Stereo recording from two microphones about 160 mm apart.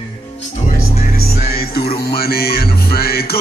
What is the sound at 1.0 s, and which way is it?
Music, 65° left (ahead or behind).